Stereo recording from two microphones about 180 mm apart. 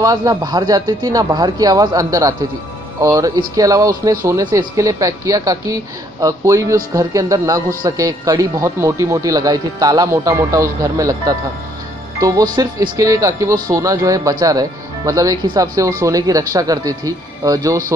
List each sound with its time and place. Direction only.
0.0 s speech: 20° right (ahead or behind)